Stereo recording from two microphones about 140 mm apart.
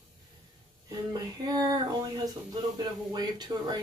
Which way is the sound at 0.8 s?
25° right (ahead or behind).